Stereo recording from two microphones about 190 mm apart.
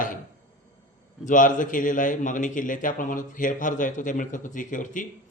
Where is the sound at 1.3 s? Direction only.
45° left (ahead or behind).